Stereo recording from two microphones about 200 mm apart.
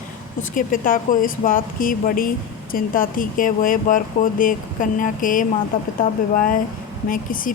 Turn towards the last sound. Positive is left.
turn(degrees=45)  # may be behind; listen again after turning